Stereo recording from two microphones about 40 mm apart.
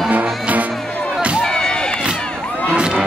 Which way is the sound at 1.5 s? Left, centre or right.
Centre.